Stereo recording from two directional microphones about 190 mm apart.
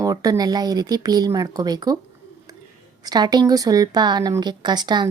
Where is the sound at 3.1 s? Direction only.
20° right (ahead or behind).